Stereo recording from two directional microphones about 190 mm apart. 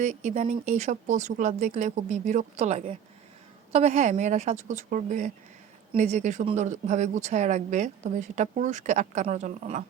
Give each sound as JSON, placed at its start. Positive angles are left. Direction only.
{"t": 0.0, "sound": "speech", "side_deg": -35}